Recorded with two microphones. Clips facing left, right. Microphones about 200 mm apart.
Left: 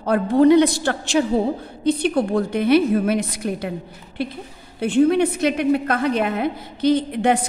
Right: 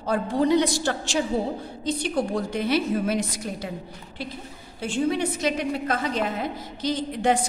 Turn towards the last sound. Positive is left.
turn(degrees=60)  # may be behind; listen again after turning